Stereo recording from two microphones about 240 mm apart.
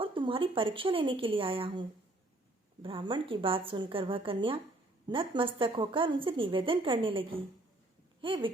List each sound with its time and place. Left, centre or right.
0.0 s a woman's voice: right